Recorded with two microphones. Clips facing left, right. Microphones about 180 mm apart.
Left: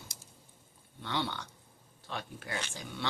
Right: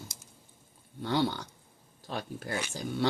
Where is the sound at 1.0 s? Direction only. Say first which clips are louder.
Right 7 dB; 40° right (ahead or behind).